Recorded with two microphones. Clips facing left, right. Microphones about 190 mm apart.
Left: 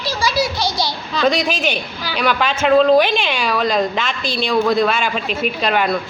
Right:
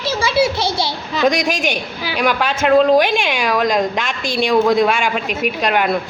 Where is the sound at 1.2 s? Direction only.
10° right (ahead or behind).